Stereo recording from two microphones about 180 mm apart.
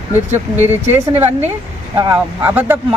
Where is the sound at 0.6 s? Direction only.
10° right (ahead or behind).